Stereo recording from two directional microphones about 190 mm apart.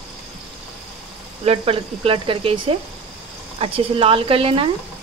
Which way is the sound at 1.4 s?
30° right (ahead or behind).